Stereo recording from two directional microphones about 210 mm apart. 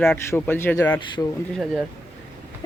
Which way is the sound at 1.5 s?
Centre (ahead or behind).